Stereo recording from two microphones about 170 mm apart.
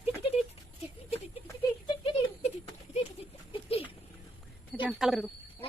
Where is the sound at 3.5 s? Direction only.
35° left (ahead or behind).